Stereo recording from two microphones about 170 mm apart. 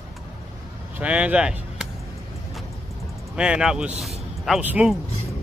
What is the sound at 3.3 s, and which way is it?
Speech, 5° right (ahead or behind).